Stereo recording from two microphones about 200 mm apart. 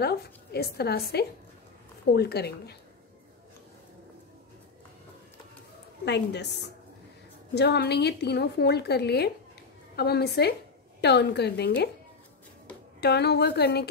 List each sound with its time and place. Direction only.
0.0 s a woman's voice: 55° left (ahead or behind)
2.1 s a woman's voice: 55° left (ahead or behind)
6.0 s a woman's voice: 60° left (ahead or behind)
7.5 s a woman's voice: 55° left (ahead or behind)
13.0 s a woman's voice: 55° left (ahead or behind)